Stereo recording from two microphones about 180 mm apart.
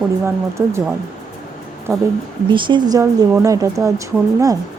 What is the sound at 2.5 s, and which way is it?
Speech, 25° right (ahead or behind).